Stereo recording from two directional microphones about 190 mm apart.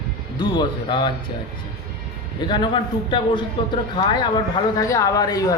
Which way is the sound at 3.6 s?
25° left (ahead or behind).